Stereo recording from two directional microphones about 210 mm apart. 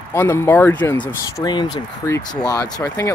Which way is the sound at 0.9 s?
20° left (ahead or behind).